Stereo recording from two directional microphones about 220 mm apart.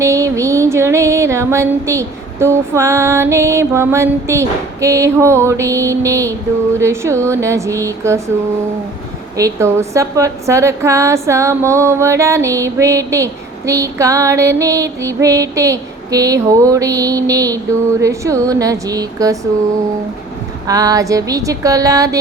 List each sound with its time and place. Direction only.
0.0 s a woman's voice: 15° right (ahead or behind)
9.4 s a woman's voice: 10° right (ahead or behind)
20.7 s a woman's voice: 15° right (ahead or behind)